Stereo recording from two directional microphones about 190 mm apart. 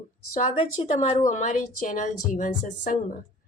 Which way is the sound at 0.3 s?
30° left (ahead or behind).